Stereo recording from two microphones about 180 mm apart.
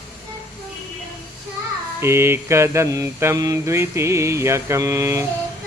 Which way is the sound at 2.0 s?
15° right (ahead or behind).